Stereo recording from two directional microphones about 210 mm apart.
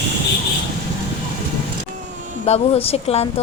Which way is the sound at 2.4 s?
30° left (ahead or behind).